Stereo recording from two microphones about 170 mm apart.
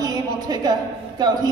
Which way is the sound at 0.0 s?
20° right (ahead or behind).